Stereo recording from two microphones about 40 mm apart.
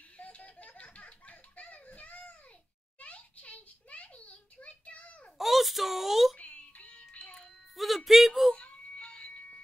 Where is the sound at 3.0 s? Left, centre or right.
Left.